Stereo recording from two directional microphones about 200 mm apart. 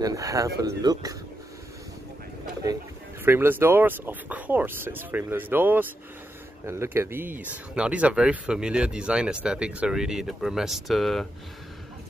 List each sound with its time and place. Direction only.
0.0 s speech: 15° right (ahead or behind)
3.3 s speech: 10° right (ahead or behind)